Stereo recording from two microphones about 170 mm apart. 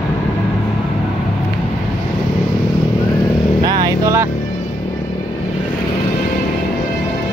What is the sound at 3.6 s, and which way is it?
Vehicle, 20° right (ahead or behind).